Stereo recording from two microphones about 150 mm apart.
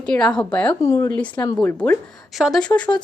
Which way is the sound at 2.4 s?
Centre (ahead or behind).